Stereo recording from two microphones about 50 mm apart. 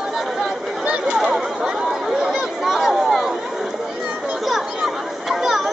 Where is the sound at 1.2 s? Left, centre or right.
Centre.